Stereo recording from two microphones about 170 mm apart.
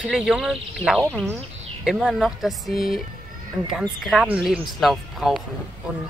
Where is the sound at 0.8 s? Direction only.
10° left (ahead or behind).